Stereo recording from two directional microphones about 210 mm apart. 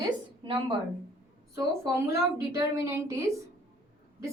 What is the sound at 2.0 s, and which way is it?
A woman's voice, 15° right (ahead or behind).